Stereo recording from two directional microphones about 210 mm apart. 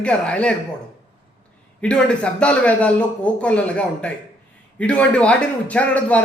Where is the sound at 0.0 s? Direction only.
5° left (ahead or behind).